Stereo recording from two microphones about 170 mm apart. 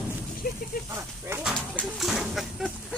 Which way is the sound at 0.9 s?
15° right (ahead or behind).